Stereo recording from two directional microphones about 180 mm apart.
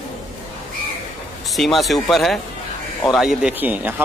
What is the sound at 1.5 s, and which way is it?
A man's voice, centre (ahead or behind).